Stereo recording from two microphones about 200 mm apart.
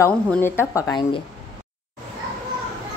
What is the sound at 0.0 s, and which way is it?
A woman's voice, 10° left (ahead or behind).